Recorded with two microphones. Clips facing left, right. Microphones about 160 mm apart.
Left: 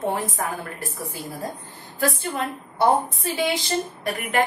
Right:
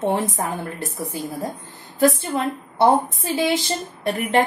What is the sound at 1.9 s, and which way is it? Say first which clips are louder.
A woman's voice: right 6 dB; 25° right (ahead or behind).